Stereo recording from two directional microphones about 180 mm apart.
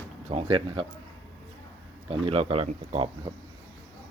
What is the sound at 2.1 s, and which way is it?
Speech, 30° right (ahead or behind).